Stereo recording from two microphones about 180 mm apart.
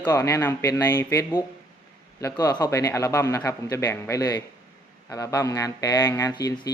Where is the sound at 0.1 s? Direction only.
15° left (ahead or behind).